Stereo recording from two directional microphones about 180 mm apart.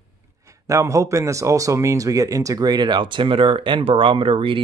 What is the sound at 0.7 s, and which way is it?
A man's voice, 15° right (ahead or behind).